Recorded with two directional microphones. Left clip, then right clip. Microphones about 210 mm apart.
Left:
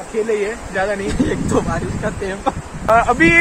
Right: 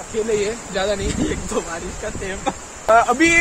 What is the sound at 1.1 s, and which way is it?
Speech, 25° left (ahead or behind).